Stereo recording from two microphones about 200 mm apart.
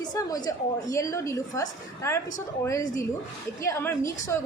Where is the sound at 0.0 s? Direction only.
20° left (ahead or behind).